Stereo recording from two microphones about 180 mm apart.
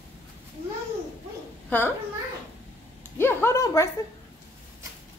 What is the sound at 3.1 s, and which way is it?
Speech, 15° left (ahead or behind).